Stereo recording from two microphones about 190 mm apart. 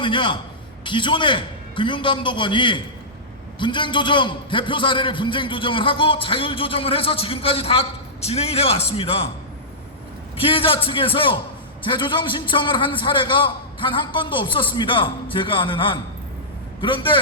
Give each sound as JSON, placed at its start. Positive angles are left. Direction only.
{"t": 0.0, "sound": "a man's voice", "side_deg": 25}
{"t": 10.3, "sound": "a man's voice", "side_deg": 30}